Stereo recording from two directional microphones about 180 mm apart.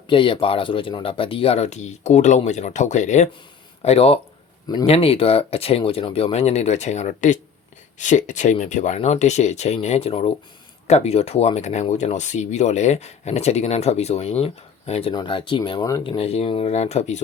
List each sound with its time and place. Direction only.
0.1 s speech: 30° left (ahead or behind)
16.1 s speech: 35° left (ahead or behind)